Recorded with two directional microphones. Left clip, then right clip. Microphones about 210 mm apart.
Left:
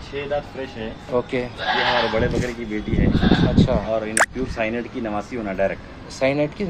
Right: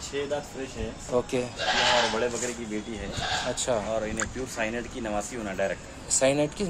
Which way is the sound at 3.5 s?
5° right (ahead or behind).